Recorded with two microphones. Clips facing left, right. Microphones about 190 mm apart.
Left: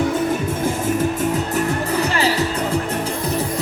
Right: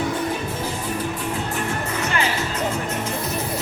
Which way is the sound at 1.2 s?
40° left (ahead or behind).